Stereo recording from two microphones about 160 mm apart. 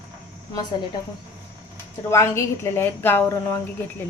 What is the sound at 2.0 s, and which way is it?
A woman's voice, 15° left (ahead or behind).